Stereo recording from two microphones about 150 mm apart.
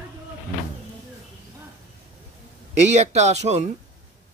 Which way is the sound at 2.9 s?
45° right (ahead or behind).